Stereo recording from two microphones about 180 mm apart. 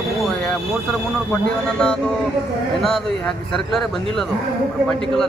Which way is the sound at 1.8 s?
5° left (ahead or behind).